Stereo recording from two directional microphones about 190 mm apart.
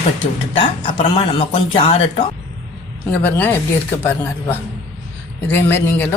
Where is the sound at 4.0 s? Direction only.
10° left (ahead or behind).